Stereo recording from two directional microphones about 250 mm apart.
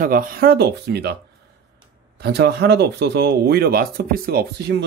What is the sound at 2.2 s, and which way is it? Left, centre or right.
Speech, right.